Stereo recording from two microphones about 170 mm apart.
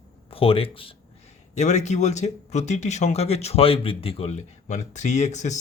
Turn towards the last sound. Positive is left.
turn(degrees=45)  # may be behind; listen again after turning